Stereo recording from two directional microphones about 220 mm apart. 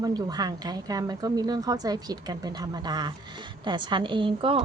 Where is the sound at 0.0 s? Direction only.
15° right (ahead or behind).